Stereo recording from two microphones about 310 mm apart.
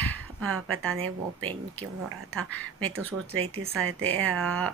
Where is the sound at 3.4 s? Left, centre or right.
Centre.